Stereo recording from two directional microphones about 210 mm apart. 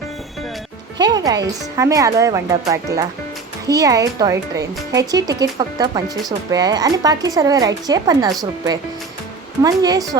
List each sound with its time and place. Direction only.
0.9 s speech: 20° right (ahead or behind)
9.6 s speech: 15° right (ahead or behind)